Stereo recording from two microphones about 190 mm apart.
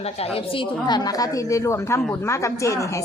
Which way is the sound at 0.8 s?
20° left (ahead or behind).